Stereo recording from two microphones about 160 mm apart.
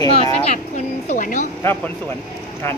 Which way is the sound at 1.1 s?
50° left (ahead or behind).